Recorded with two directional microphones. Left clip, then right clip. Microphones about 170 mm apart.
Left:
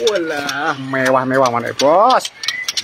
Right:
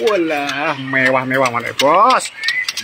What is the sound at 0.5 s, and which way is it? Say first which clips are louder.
Speech: right 1 dB; centre (ahead or behind).